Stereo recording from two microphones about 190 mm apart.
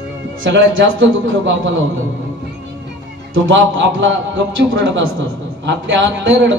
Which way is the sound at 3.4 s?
75° right (ahead or behind).